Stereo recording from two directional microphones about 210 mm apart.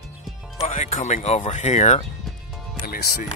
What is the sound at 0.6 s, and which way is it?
Speech, 35° left (ahead or behind).